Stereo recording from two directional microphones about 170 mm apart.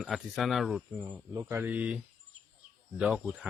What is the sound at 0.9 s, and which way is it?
Speech, 20° right (ahead or behind).